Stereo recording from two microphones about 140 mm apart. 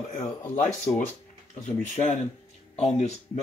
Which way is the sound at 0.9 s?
5° left (ahead or behind).